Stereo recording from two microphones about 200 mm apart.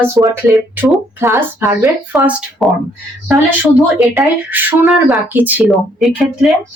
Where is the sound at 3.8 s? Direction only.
10° right (ahead or behind).